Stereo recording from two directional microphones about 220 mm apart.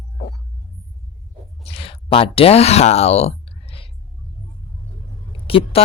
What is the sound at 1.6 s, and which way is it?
Speech, 25° left (ahead or behind).